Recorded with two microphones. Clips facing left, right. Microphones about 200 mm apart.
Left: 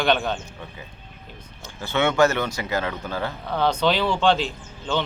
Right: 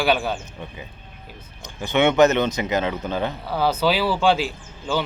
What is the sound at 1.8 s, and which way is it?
Speech, 20° right (ahead or behind).